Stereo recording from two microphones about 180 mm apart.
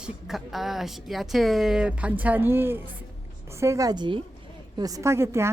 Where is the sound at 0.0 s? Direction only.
Centre (ahead or behind).